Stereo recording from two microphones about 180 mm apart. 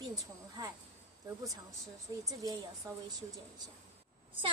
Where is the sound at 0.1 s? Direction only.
20° right (ahead or behind).